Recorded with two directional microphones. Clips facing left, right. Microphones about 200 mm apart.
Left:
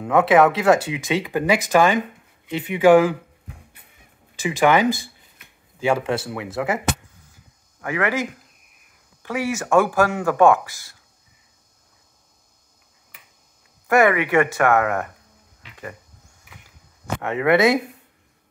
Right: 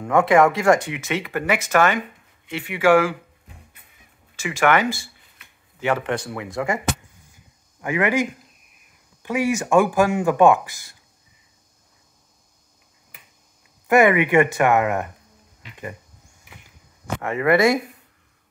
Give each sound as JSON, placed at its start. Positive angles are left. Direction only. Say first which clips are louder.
{"t": 0.0, "sound": "speech", "louder": "left 1 dB", "side_deg": 5}
{"t": 1.0, "sound": "speech", "louder": "left 3 dB", "side_deg": 15}
{"t": 4.4, "sound": "speech", "louder": "left 2 dB", "side_deg": 15}
{"t": 7.8, "sound": "speech", "louder": "right 2 dB", "side_deg": -15}
{"t": 13.8, "sound": "speech", "louder": "right 1 dB", "side_deg": -15}
{"t": 17.2, "sound": "speech", "louder": "even", "side_deg": 0}